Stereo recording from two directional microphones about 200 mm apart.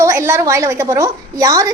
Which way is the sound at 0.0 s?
15° right (ahead or behind).